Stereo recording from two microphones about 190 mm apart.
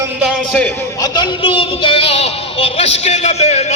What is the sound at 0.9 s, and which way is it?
Speech, 20° left (ahead or behind).